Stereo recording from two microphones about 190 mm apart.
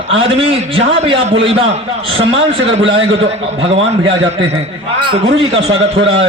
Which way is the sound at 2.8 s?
80° right.